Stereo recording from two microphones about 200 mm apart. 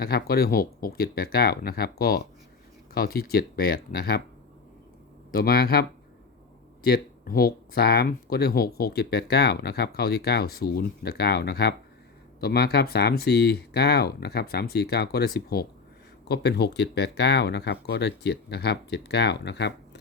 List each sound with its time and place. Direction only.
0.0 s speech: 50° left (ahead or behind)
5.3 s speech: 50° left (ahead or behind)
6.8 s speech: 50° left (ahead or behind)